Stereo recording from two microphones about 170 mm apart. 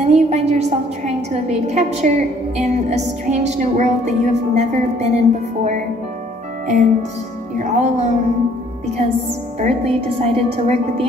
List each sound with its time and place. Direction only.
0.0 s a woman's voice: 40° right (ahead or behind)
9.6 s a woman's voice: 40° right (ahead or behind)